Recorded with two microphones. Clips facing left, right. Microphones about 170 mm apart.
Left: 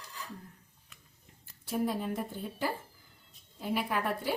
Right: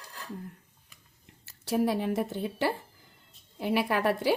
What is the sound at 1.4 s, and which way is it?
A woman's voice, 80° right.